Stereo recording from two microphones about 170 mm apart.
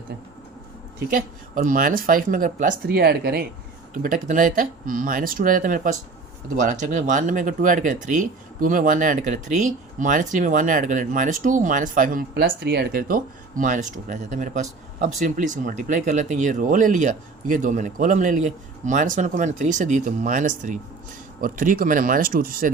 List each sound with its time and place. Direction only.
0.9 s speech: 55° right (ahead or behind)
3.9 s speech: 50° right (ahead or behind)